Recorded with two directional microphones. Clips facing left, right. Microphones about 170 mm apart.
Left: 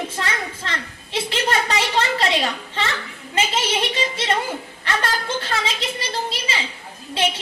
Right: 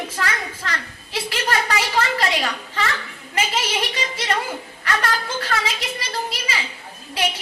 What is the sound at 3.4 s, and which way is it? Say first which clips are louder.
A woman's voice: left 2 dB; 25° left (ahead or behind).